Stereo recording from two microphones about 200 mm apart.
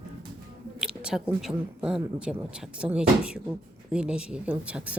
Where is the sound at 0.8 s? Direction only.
5° right (ahead or behind).